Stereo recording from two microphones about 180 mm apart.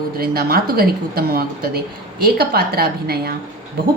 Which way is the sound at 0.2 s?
55° right (ahead or behind).